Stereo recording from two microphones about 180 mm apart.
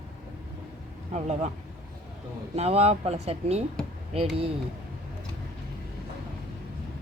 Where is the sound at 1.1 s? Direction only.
40° right (ahead or behind).